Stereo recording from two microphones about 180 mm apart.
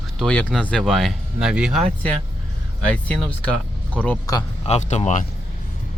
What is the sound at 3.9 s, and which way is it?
Speech, 5° left (ahead or behind).